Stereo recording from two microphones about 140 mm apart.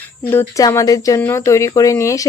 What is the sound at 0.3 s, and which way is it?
Speech, 20° left (ahead or behind).